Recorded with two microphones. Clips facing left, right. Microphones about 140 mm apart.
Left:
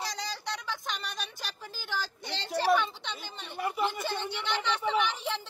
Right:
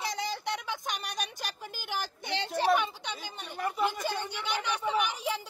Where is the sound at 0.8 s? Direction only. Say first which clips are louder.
Right 2 dB; 50° right (ahead or behind).